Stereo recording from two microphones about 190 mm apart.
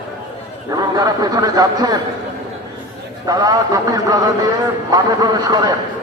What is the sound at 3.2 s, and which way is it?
A man's voice, 20° right (ahead or behind).